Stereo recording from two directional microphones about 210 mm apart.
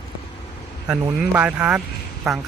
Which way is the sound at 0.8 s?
5° right (ahead or behind).